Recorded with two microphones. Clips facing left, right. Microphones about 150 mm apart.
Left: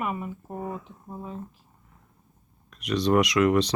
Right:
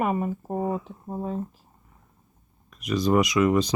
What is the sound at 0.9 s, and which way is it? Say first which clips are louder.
Speech: right 7 dB; 35° right (ahead or behind).